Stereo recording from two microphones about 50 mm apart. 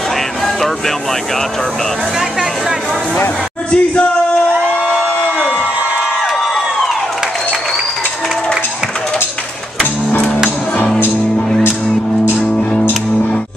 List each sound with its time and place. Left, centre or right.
3.7 s music: left
5.5 s crowd: right
6.2 s crowd: centre